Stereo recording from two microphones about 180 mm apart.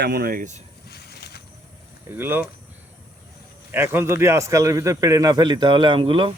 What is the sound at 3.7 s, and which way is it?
A man's voice, 15° right (ahead or behind).